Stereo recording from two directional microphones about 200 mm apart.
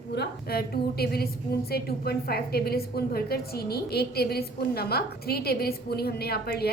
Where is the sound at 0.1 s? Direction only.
50° left (ahead or behind).